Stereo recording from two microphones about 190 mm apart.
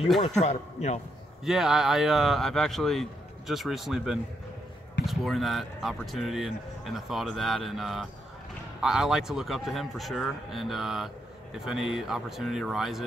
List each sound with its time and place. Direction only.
0.2 s a man's voice: 35° left (ahead or behind)
1.4 s speech: centre (ahead or behind)